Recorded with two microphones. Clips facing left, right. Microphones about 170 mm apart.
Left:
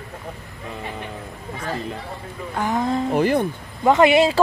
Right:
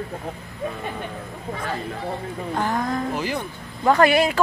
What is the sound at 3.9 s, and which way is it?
Speech, 20° left (ahead or behind).